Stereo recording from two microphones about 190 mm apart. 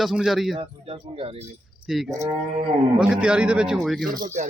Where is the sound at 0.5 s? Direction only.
30° right (ahead or behind).